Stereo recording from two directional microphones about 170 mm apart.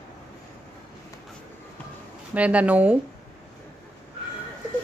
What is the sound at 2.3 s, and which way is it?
Speech, 10° right (ahead or behind).